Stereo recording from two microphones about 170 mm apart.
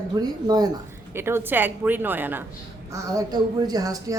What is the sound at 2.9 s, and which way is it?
A woman's voice, 20° right (ahead or behind).